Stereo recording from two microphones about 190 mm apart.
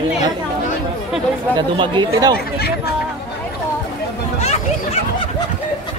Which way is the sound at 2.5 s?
55° left (ahead or behind).